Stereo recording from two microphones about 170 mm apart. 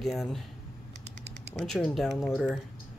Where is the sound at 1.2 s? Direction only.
90° right.